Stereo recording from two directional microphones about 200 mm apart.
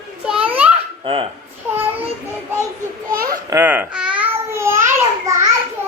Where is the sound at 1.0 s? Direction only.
25° right (ahead or behind).